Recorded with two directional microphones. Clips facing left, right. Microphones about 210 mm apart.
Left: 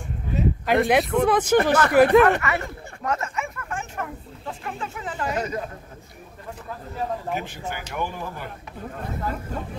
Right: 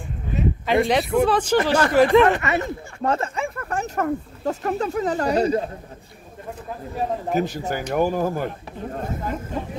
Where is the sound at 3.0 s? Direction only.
30° right (ahead or behind).